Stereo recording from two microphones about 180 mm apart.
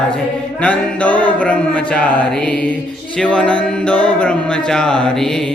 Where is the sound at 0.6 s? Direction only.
5° left (ahead or behind).